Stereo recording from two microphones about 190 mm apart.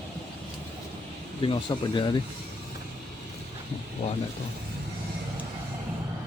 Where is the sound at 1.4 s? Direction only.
25° left (ahead or behind).